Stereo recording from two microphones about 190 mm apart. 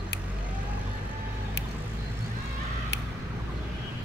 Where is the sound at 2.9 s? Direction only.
65° left (ahead or behind).